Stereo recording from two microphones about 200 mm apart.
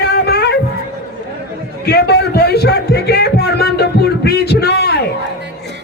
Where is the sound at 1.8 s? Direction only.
55° left (ahead or behind).